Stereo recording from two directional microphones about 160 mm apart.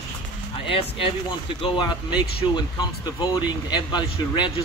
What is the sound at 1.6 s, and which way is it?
Speech, 30° left (ahead or behind).